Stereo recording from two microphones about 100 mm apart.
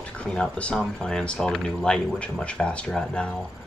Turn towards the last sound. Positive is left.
turn(degrees=10)  # may be behind; listen again after turning